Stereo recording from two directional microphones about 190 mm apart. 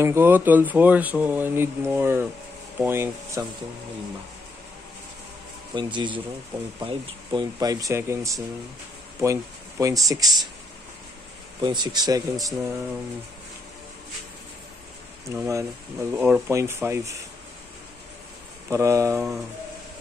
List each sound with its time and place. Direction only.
0.0 s speech: 10° right (ahead or behind)
5.8 s speech: 25° right (ahead or behind)
11.6 s speech: 20° right (ahead or behind)
15.2 s speech: 15° right (ahead or behind)
18.7 s speech: 15° right (ahead or behind)